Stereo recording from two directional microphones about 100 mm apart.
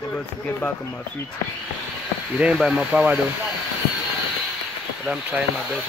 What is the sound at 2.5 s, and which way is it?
Speech, 5° right (ahead or behind).